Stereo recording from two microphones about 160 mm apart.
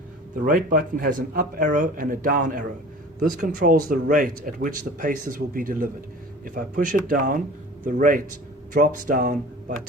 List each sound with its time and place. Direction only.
0.4 s speech: 60° right (ahead or behind)